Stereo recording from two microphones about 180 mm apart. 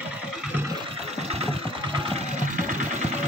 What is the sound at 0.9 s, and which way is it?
Engine, 35° right (ahead or behind).